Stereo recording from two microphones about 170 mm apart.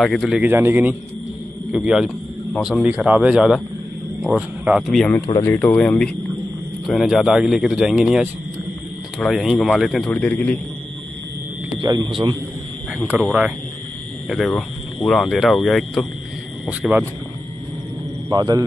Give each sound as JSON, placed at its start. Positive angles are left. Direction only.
{"t": 0.0, "sound": "a man's voice", "side_deg": 0}
{"t": 11.8, "sound": "speech", "side_deg": -25}
{"t": 13.2, "sound": "a man's voice", "side_deg": -5}
{"t": 18.3, "sound": "a man's voice", "side_deg": -25}